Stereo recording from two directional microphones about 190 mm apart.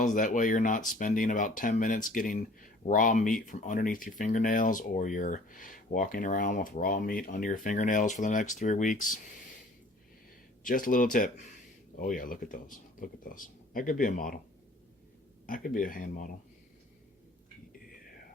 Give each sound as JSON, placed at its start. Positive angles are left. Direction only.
{"t": 0.0, "sound": "speech", "side_deg": 40}
{"t": 10.6, "sound": "speech", "side_deg": 45}
{"t": 15.4, "sound": "speech", "side_deg": 45}